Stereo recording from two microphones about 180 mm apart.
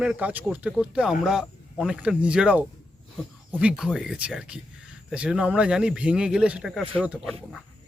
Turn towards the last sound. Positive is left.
turn(degrees=5)  # may be behind; listen again after turning